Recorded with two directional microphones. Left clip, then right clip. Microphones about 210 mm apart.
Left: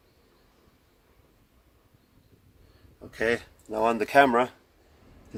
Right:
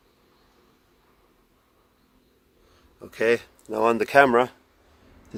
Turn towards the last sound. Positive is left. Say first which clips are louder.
# right 3 dB
turn(degrees=-50)  # may be behind; listen again after turning